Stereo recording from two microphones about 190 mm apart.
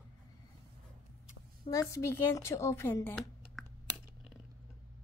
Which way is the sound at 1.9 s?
15° left (ahead or behind).